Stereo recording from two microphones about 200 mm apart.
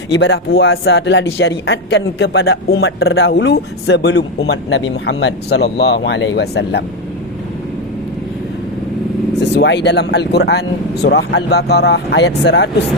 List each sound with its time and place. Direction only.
0.1 s speech: 60° left (ahead or behind)
2.8 s speech: 75° left (ahead or behind); by 6.8 s 55° left (ahead or behind)
9.4 s speech: 60° left (ahead or behind)